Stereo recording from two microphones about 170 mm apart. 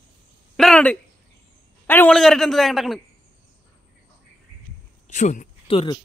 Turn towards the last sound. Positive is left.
turn(degrees=35)  # may be behind; listen again after turning